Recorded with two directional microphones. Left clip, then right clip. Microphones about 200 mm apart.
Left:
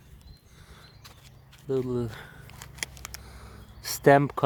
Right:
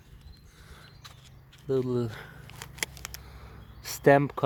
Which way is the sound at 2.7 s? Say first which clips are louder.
Right 2 dB; 20° right (ahead or behind).